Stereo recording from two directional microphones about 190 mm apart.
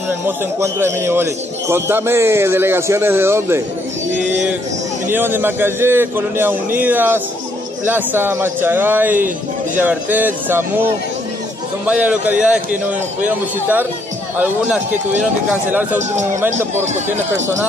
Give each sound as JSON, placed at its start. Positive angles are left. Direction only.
{"t": 0.6, "sound": "a man's voice", "side_deg": -15}
{"t": 5.1, "sound": "a man's voice", "side_deg": -10}
{"t": 11.8, "sound": "a man's voice", "side_deg": -5}
{"t": 15.7, "sound": "a man's voice", "side_deg": -10}